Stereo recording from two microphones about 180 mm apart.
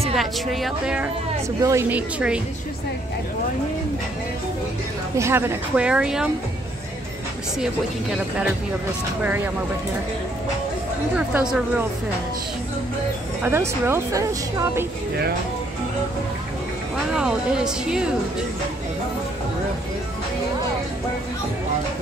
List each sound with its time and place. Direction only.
0.2 s speech: centre (ahead or behind)
1.6 s speech: 15° right (ahead or behind)
5.1 s speech: 15° right (ahead or behind)
9.2 s speech: 10° right (ahead or behind)
11.1 s speech: 5° right (ahead or behind)
13.4 s speech: 15° right (ahead or behind)
17.1 s speech: 5° right (ahead or behind)